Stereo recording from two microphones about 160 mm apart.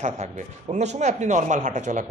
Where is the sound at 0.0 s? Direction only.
45° right (ahead or behind).